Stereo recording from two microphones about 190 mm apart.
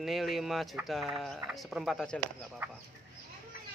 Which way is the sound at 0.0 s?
Centre (ahead or behind).